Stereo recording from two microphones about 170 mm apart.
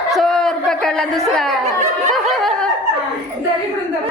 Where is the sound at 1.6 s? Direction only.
45° right (ahead or behind).